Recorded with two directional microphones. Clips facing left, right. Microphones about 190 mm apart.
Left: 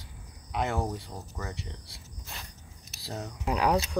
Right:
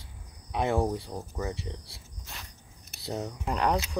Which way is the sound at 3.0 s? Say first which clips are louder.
Right 4 dB; 25° right (ahead or behind).